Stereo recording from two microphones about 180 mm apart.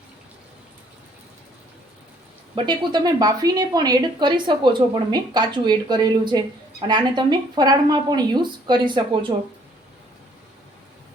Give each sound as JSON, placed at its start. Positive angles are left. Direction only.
{"t": 2.6, "sound": "speech", "side_deg": -25}